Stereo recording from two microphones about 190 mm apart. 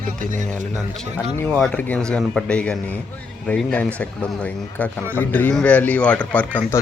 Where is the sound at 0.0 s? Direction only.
45° right (ahead or behind).